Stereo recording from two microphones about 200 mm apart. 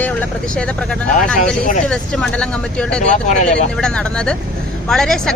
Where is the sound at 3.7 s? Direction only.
5° left (ahead or behind).